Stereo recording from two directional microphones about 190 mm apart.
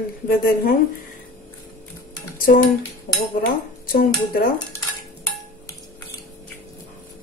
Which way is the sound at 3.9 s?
50° left (ahead or behind).